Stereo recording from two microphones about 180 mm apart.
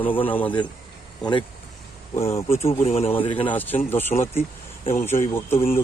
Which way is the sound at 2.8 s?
35° left (ahead or behind).